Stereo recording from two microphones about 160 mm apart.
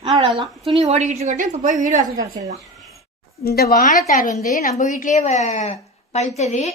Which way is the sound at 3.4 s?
75° left (ahead or behind).